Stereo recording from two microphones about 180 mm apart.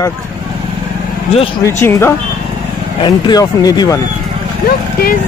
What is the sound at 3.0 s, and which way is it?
Speech, 25° left (ahead or behind).